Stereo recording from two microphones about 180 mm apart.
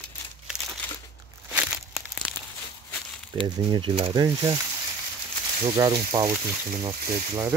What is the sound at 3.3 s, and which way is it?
Speech, 25° right (ahead or behind).